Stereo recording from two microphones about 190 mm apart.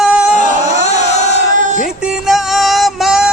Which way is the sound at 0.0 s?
5° right (ahead or behind).